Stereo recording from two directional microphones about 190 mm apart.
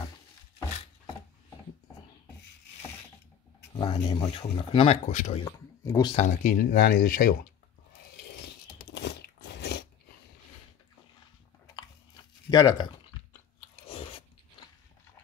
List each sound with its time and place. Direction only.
3.7 s speech: 25° left (ahead or behind)
5.4 s speech: 20° left (ahead or behind)
6.1 s speech: 45° left (ahead or behind)
8.2 s biting: 65° left (ahead or behind)
12.4 s speech: 20° left (ahead or behind)
13.8 s biting: 30° left (ahead or behind)